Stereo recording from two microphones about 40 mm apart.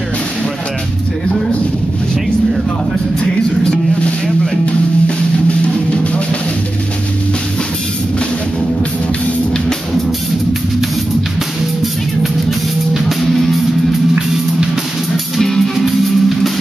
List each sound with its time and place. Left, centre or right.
3.6 s a sound: left
13.3 s music: centre
14.1 s music: centre
15.3 s music: centre
15.8 s music: centre